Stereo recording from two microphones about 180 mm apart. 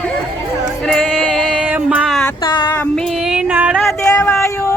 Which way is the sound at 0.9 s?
5° left (ahead or behind).